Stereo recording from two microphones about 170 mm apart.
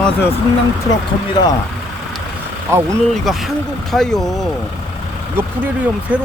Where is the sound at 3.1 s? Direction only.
Centre (ahead or behind).